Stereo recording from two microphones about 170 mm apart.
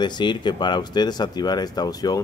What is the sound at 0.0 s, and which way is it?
Speech, 25° left (ahead or behind).